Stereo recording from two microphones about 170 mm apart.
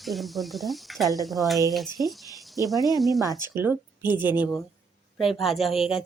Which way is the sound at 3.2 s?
20° right (ahead or behind).